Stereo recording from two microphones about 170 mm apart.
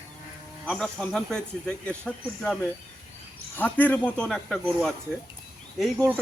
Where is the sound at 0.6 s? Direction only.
5° left (ahead or behind).